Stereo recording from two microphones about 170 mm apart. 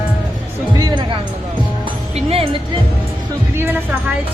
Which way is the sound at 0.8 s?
25° right (ahead or behind).